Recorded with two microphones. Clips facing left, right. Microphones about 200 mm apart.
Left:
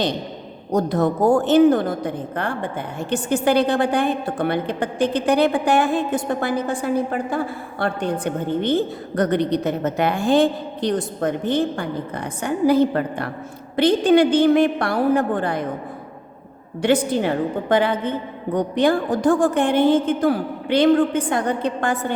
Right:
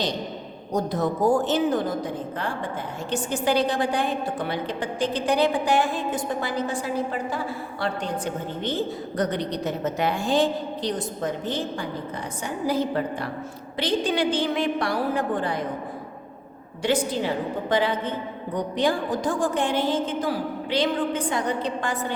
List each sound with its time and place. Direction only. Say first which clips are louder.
0.7 s a woman's voice: left 5 dB; 60° left (ahead or behind)
16.8 s a woman's voice: left 5 dB; 60° left (ahead or behind)